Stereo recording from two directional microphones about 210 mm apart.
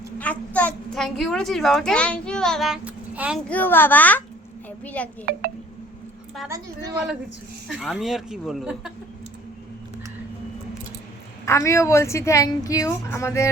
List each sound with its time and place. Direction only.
0.2 s a child's voice: 5° left (ahead or behind)
3.5 s a woman's voice: 10° left (ahead or behind)
6.5 s a woman's voice: 15° right (ahead or behind)
7.7 s a child's voice: centre (ahead or behind)
11.4 s a woman's voice: 15° left (ahead or behind)